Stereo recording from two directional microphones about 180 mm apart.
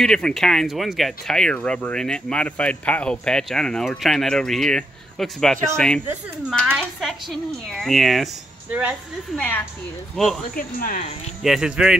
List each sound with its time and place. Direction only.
0.0 s a woman's voice: 5° left (ahead or behind)
10.5 s speech: 50° left (ahead or behind)
11.4 s speech: 5° right (ahead or behind)